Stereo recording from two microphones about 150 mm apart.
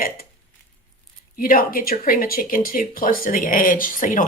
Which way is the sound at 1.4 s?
70° left (ahead or behind).